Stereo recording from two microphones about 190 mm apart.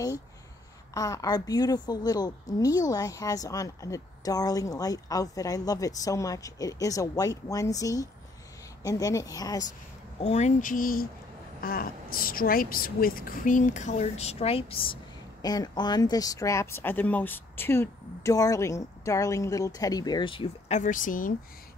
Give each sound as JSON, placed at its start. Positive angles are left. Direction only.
{"t": 0.9, "sound": "a woman's voice", "side_deg": 20}
{"t": 10.2, "sound": "a woman's voice", "side_deg": 35}